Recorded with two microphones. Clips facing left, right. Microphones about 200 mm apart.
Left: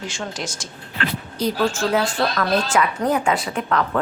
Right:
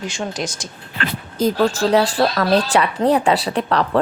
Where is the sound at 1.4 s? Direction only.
40° right (ahead or behind).